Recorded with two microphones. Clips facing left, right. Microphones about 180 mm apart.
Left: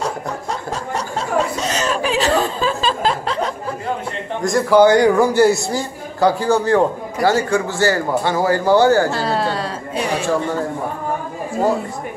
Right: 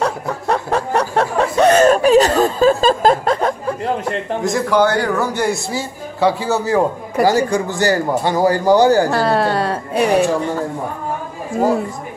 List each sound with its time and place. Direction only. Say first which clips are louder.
0.0 s snicker: right 4 dB; 60° right (ahead or behind)
4.4 s a man's voice: left 4 dB; centre (ahead or behind)
4.7 s a man's voice: left 6 dB; 15° left (ahead or behind); by 9.1 s 15° right (ahead or behind)
9.1 s speech: right 4 dB; 55° right (ahead or behind)